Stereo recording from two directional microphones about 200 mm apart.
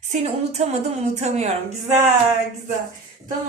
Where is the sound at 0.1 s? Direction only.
35° right (ahead or behind).